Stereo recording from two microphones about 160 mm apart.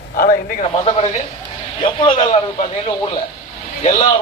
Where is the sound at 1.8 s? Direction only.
30° left (ahead or behind).